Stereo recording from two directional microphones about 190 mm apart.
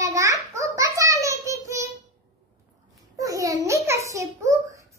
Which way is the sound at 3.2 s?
15° right (ahead or behind).